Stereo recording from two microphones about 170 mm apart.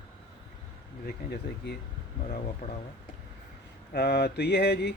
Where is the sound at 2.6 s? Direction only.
55° left (ahead or behind).